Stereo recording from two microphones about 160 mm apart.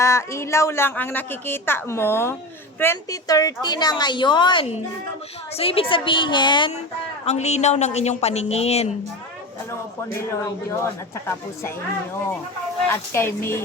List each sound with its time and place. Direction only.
0.0 s a woman's voice: 15° left (ahead or behind)
7.3 s speech: 45° left (ahead or behind)
10.2 s speech: 15° left (ahead or behind)
12.9 s speech: 15° left (ahead or behind)